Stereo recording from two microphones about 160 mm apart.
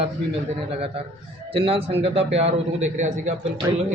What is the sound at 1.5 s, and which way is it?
A man's voice, 35° right (ahead or behind).